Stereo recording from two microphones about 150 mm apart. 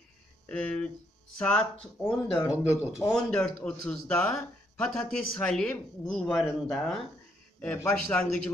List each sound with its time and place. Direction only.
0.5 s a man's voice: 5° left (ahead or behind)
2.5 s speech: 10° right (ahead or behind)
3.1 s a man's voice: 5° left (ahead or behind)
7.6 s a man's voice: 15° left (ahead or behind)